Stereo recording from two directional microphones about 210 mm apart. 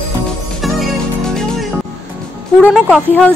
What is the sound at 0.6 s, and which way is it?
Music, centre (ahead or behind).